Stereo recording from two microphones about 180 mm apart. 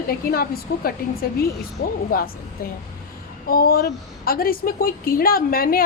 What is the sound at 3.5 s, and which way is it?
A woman's voice, 55° left (ahead or behind).